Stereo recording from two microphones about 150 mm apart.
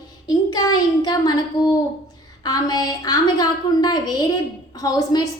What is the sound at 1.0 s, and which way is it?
A woman's voice, 25° left (ahead or behind).